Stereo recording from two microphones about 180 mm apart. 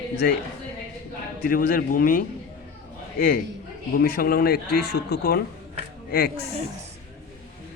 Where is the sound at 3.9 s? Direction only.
55° left (ahead or behind).